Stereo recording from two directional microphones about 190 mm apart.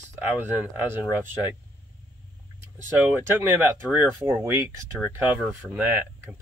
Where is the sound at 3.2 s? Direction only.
10° right (ahead or behind).